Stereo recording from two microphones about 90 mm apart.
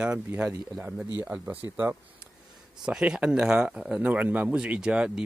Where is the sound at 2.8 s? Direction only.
5° right (ahead or behind).